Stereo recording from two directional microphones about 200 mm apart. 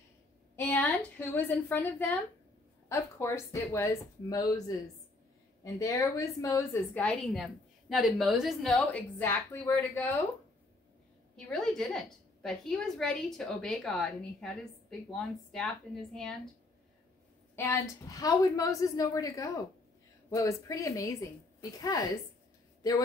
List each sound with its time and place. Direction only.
0.6 s a woman's voice: 10° left (ahead or behind)
11.3 s a woman's voice: 5° left (ahead or behind)
17.6 s a woman's voice: 15° left (ahead or behind)